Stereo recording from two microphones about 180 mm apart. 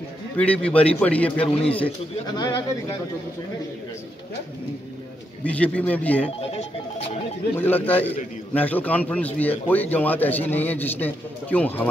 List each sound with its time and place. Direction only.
0.4 s speech: 5° left (ahead or behind)
1.4 s a man's voice: 30° left (ahead or behind)
5.4 s speech: 10° left (ahead or behind)
7.5 s speech: 10° left (ahead or behind)